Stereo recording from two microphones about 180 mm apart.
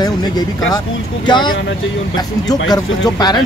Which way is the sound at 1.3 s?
25° left (ahead or behind).